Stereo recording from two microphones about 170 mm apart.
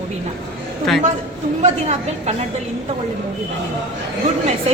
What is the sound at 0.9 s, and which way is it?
Speech, centre (ahead or behind).